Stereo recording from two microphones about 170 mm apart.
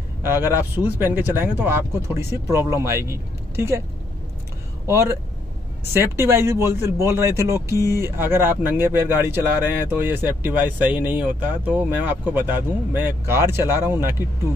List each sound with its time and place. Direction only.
0.2 s speech: 15° right (ahead or behind)
4.8 s speech: 15° right (ahead or behind)